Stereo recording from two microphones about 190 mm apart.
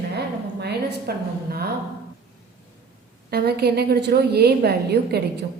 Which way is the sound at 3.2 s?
55° right (ahead or behind).